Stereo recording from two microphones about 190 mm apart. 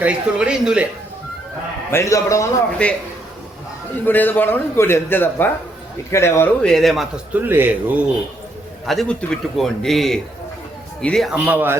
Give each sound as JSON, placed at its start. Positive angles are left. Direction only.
{"t": 0.0, "sound": "a man's voice", "side_deg": -5}
{"t": 1.9, "sound": "a man's voice", "side_deg": 15}
{"t": 4.0, "sound": "a man's voice", "side_deg": 10}
{"t": 8.9, "sound": "a man's voice", "side_deg": 0}